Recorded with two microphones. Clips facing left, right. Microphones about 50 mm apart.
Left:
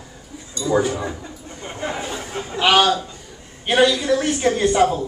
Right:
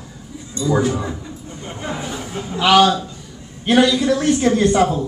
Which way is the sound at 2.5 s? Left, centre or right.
Centre.